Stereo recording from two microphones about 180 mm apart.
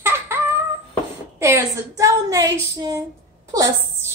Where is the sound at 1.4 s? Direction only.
15° right (ahead or behind).